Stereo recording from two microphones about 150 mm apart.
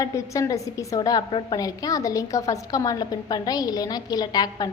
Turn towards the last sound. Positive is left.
turn(degrees=25)  # may be behind; listen again after turning